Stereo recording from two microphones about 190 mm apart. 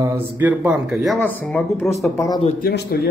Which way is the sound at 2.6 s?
60° left (ahead or behind).